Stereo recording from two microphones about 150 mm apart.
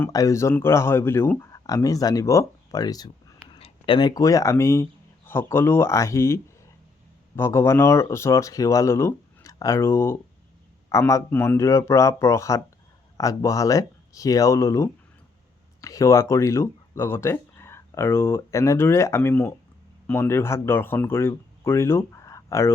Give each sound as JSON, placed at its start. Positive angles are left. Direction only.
{"t": 0.0, "sound": "a man's voice", "side_deg": 20}